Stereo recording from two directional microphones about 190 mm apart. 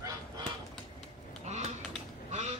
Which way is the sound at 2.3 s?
35° right (ahead or behind).